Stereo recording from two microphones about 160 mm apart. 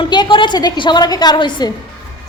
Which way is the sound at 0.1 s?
30° left (ahead or behind).